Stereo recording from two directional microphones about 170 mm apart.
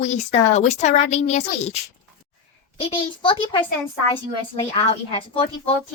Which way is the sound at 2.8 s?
30° left (ahead or behind).